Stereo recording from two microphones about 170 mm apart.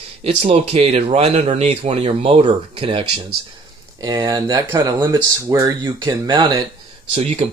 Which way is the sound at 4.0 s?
20° right (ahead or behind).